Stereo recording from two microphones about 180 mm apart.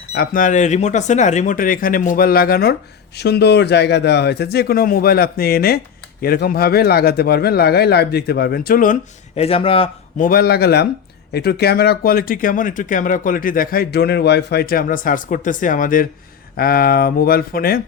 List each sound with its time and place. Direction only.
0.1 s speech: 55° left (ahead or behind)
9.3 s a man's voice: 35° left (ahead or behind)
10.2 s speech: 55° left (ahead or behind)